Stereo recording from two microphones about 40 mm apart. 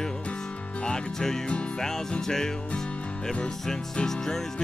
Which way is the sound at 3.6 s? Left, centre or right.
Centre.